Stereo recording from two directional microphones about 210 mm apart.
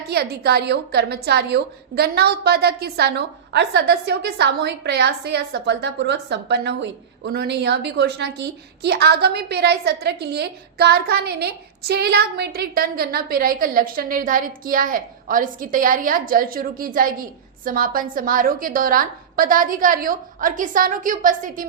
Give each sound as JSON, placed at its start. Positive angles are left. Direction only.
{"t": 0.1, "sound": "a woman's voice", "side_deg": -50}